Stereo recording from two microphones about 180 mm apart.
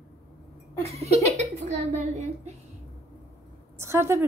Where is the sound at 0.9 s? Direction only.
35° right (ahead or behind).